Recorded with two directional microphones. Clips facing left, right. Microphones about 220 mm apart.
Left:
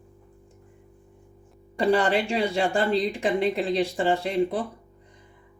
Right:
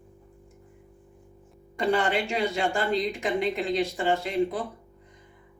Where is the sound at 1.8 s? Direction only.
35° left (ahead or behind).